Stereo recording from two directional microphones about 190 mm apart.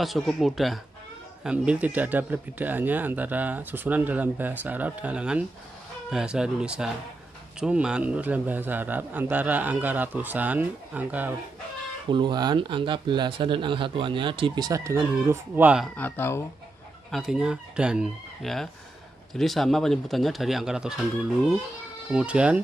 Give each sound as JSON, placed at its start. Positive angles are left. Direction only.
{"t": 0.0, "sound": "speech", "side_deg": 0}
{"t": 12.1, "sound": "speech", "side_deg": -25}
{"t": 16.0, "sound": "speech", "side_deg": 10}
{"t": 17.1, "sound": "speech", "side_deg": 0}